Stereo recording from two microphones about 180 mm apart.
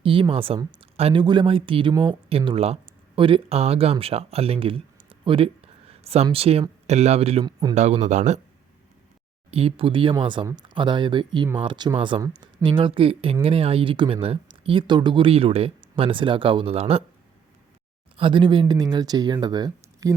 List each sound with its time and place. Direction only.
0.0 s speech: 30° right (ahead or behind)
9.5 s speech: 35° right (ahead or behind)
18.2 s speech: 25° right (ahead or behind)